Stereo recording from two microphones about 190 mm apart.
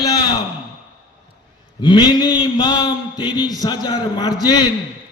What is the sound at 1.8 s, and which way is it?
A man's voice, 25° left (ahead or behind).